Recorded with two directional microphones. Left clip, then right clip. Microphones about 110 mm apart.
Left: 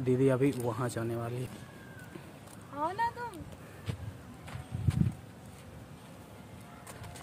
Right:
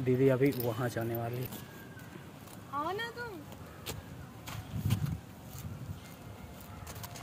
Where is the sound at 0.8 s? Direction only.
15° left (ahead or behind).